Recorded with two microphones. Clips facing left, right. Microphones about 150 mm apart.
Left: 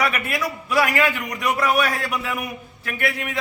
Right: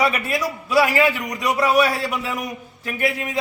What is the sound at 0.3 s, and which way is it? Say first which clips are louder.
A man's voice: right 2 dB; 35° right (ahead or behind).